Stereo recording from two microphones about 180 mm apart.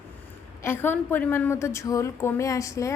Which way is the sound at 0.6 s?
10° left (ahead or behind).